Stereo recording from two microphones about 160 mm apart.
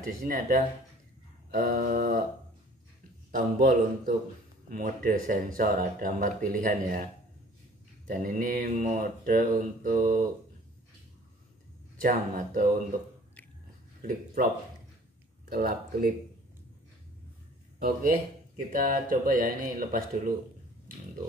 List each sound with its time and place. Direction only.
0.0 s mantra: 55° right (ahead or behind)
3.3 s mantra: 60° right (ahead or behind)
8.1 s mantra: 55° right (ahead or behind)
12.0 s mantra: 55° right (ahead or behind)
14.0 s mantra: 60° right (ahead or behind)
15.5 s speech: 70° right (ahead or behind)
17.7 s speech: 70° right (ahead or behind)
18.8 s mantra: 60° right (ahead or behind)